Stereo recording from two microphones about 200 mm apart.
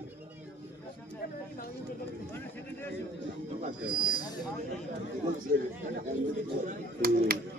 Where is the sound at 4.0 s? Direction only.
20° left (ahead or behind).